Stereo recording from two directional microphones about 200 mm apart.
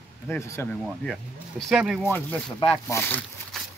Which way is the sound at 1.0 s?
Centre (ahead or behind).